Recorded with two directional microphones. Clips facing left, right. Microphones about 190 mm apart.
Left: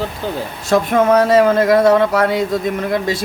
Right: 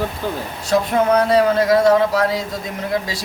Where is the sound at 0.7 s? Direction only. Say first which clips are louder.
Left 3 dB; 50° left (ahead or behind).